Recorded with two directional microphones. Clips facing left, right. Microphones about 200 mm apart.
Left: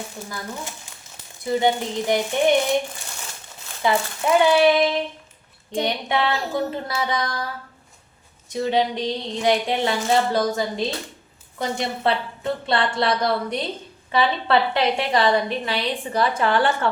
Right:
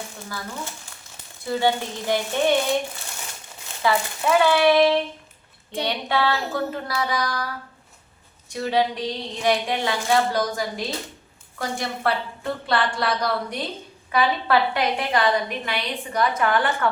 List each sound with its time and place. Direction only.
1.5 s speech: 20° left (ahead or behind)
3.8 s a woman's voice: 20° left (ahead or behind)